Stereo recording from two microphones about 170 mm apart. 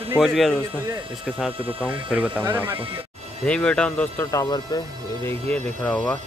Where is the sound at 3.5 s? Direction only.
5° left (ahead or behind); by 4.8 s 25° left (ahead or behind).